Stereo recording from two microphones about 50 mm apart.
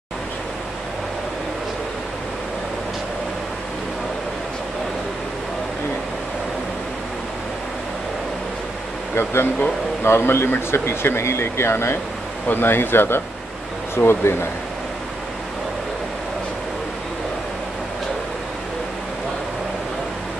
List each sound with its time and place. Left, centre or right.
9.1 s speech: left
12.4 s speech: left